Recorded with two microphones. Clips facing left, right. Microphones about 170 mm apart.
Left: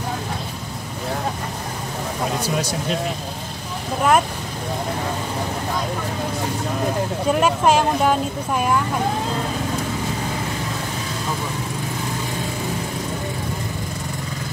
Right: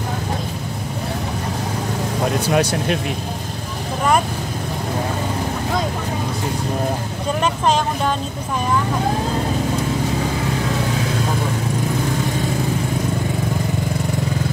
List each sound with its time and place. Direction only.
2.5 s speech: 65° right (ahead or behind)
7.4 s speech: 10° left (ahead or behind)